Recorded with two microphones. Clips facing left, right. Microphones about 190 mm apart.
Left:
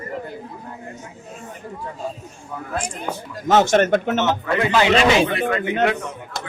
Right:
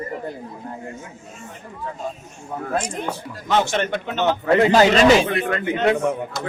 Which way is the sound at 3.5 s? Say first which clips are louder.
Left 5 dB; 45° left (ahead or behind).